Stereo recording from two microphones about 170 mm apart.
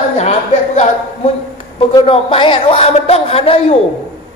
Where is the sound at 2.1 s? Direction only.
30° left (ahead or behind).